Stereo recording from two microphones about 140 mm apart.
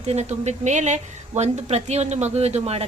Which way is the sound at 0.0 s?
50° right (ahead or behind).